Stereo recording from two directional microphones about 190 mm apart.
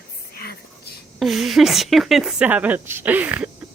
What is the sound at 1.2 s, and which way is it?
A woman's voice, centre (ahead or behind).